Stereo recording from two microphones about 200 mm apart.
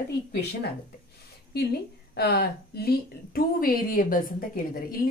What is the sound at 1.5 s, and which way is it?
A woman's voice, 55° left (ahead or behind).